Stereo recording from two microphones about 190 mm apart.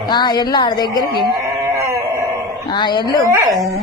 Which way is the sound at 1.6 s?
15° right (ahead or behind).